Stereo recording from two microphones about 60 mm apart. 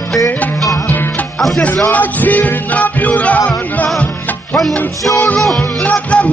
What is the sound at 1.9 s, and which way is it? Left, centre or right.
Music, left.